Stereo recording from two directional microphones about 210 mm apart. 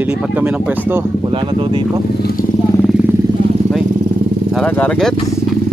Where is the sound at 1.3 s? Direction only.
25° right (ahead or behind).